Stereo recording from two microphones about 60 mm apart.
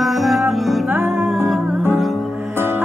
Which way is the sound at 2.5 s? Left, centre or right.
Right.